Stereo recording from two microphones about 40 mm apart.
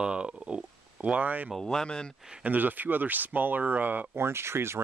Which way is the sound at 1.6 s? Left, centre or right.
Centre.